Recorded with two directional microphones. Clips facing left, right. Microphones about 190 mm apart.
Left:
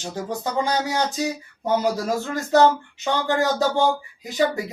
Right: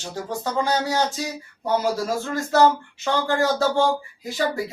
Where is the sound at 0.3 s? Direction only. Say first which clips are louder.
Right 1 dB; 15° left (ahead or behind).